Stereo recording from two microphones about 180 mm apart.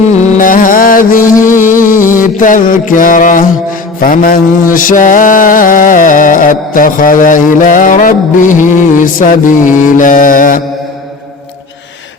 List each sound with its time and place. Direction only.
0.2 s music: 50° left (ahead or behind)
2.0 s a sound: 10° right (ahead or behind)
2.4 s mantra: 45° left (ahead or behind)